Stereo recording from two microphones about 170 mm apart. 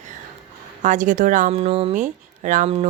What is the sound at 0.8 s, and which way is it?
Speech, 45° right (ahead or behind).